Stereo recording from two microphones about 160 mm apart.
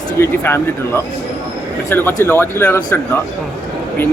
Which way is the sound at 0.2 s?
15° left (ahead or behind).